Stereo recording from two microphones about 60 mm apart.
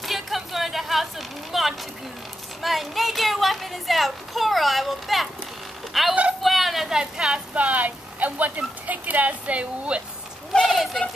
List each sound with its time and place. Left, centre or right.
0.0 s a sound: centre
2.6 s speech: centre
7.5 s a woman's voice: right
10.7 s speech: centre